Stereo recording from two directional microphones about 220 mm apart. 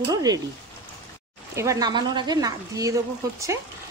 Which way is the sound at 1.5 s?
15° right (ahead or behind).